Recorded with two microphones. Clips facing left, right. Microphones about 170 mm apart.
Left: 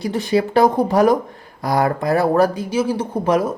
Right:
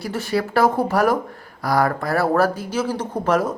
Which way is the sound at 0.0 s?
20° left (ahead or behind).